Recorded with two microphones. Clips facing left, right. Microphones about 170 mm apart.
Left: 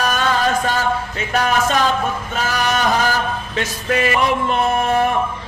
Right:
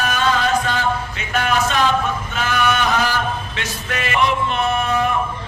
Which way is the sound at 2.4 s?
35° left (ahead or behind).